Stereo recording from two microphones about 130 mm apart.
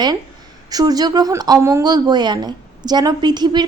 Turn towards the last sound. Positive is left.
turn(degrees=-35)  # may be behind; listen again after turning